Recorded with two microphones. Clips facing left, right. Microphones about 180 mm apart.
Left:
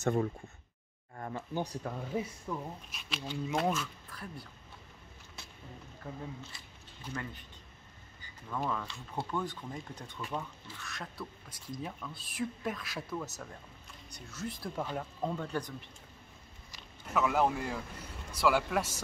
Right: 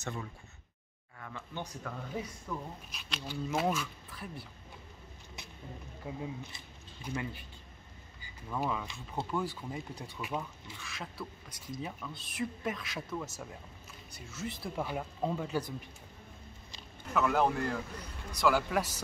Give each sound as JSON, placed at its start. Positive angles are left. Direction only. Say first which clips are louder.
{"t": 0.0, "sound": "speech", "louder": "left 10 dB", "side_deg": 55}
{"t": 1.1, "sound": "speech", "louder": "left 6 dB", "side_deg": 40}
{"t": 2.5, "sound": "speech", "louder": "even", "side_deg": 20}
{"t": 2.9, "sound": "speech", "louder": "left 1 dB", "side_deg": 0}
{"t": 6.0, "sound": "speech", "louder": "right 3 dB", "side_deg": -15}
{"t": 17.1, "sound": "speech", "louder": "even", "side_deg": 5}